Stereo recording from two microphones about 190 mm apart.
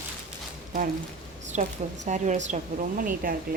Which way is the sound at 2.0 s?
40° right (ahead or behind).